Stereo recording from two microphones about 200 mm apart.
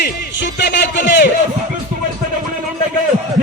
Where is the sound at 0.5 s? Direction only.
60° left (ahead or behind).